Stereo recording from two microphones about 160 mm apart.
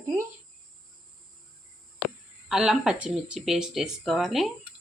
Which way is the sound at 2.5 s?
5° right (ahead or behind).